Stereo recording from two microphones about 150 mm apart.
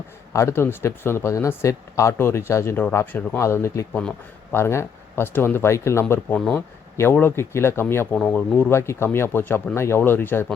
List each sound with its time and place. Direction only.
0.3 s speech: 15° left (ahead or behind)